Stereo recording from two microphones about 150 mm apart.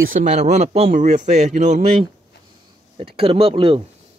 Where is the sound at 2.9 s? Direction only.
40° right (ahead or behind).